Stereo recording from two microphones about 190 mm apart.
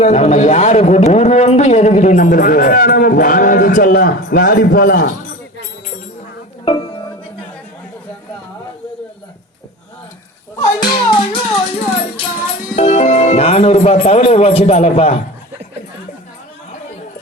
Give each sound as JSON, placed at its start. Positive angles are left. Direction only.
{"t": 0.0, "sound": "a man's voice", "side_deg": 35}
{"t": 6.7, "sound": "music", "side_deg": 25}
{"t": 10.8, "sound": "music", "side_deg": 25}
{"t": 12.7, "sound": "a man's voice", "side_deg": 35}